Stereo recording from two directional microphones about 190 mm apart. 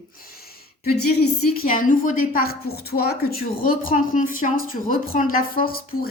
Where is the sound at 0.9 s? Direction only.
55° left (ahead or behind).